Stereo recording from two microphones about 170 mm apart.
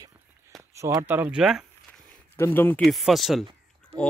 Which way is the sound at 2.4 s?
10° left (ahead or behind).